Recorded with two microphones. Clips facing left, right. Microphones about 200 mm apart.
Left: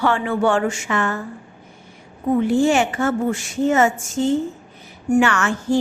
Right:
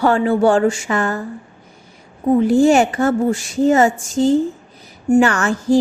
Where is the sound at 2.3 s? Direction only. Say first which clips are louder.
Right 4 dB; 35° right (ahead or behind).